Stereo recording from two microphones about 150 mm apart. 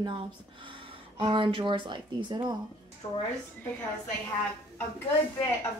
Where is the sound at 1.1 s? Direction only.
35° right (ahead or behind).